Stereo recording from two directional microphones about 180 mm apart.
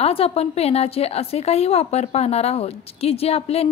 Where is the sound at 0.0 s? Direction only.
35° left (ahead or behind).